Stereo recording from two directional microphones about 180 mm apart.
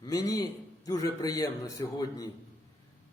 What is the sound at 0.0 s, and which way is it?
Speech, 20° left (ahead or behind).